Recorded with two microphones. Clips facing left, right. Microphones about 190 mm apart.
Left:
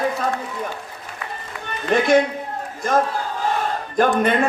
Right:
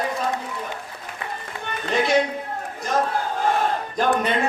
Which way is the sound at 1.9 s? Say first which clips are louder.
Left 4 dB; 50° left (ahead or behind).